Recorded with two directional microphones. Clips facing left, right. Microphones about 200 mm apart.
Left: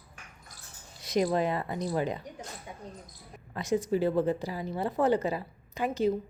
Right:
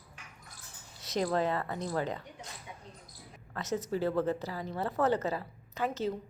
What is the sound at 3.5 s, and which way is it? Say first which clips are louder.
A woman's voice: left 5 dB; 15° left (ahead or behind).